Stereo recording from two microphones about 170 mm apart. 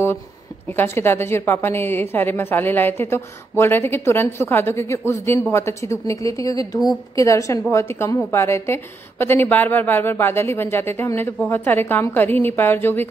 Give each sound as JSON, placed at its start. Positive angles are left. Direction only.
{"t": 0.7, "sound": "a woman's voice", "side_deg": 15}